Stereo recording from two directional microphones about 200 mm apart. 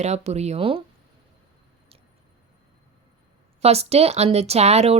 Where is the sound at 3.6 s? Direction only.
30° right (ahead or behind).